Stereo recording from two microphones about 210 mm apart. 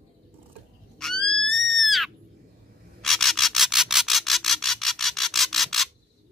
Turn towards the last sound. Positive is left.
turn(degrees=0)  # may be behind; listen again after turning